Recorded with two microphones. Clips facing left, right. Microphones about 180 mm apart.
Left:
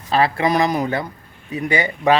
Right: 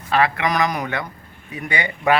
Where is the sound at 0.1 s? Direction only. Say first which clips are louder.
Left 2 dB; 30° left (ahead or behind).